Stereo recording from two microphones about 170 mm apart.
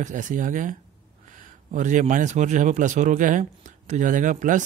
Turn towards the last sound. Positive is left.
turn(degrees=-50)  # may be behind; listen again after turning